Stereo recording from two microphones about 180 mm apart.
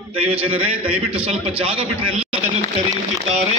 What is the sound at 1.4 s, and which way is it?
A man's voice, 30° right (ahead or behind).